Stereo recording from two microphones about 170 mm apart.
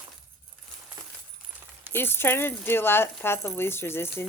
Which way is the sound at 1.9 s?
15° left (ahead or behind).